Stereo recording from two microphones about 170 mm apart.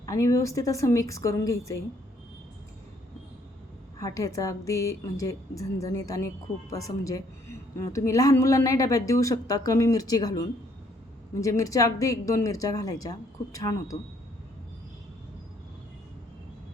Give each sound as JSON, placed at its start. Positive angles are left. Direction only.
{"t": 0.0, "sound": "a woman's voice", "side_deg": 20}
{"t": 4.0, "sound": "a woman's voice", "side_deg": 20}